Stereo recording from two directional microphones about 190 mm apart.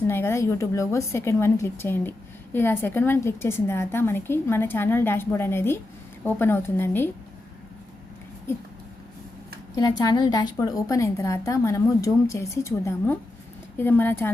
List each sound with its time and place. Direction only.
0.1 s a woman's voice: 15° left (ahead or behind)
9.7 s a woman's voice: 20° left (ahead or behind)